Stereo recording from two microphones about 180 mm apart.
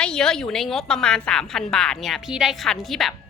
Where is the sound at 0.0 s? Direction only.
5° left (ahead or behind).